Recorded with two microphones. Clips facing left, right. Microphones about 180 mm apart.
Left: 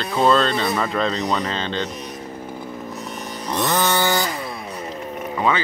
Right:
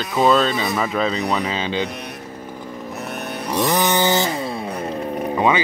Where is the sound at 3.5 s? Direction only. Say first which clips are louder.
Right 2 dB; 15° right (ahead or behind).